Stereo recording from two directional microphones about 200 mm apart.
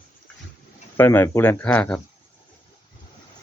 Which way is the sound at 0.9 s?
10° left (ahead or behind).